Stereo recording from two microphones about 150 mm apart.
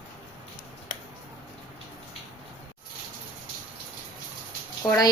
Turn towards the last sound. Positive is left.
turn(degrees=25)  # may be behind; listen again after turning